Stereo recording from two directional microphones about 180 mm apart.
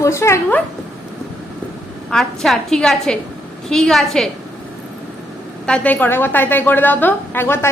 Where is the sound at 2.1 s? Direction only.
Centre (ahead or behind).